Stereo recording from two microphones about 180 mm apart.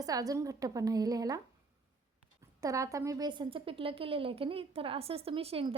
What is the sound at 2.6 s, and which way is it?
A woman's voice, 20° right (ahead or behind).